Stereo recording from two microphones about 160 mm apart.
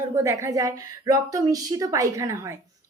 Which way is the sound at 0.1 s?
20° right (ahead or behind).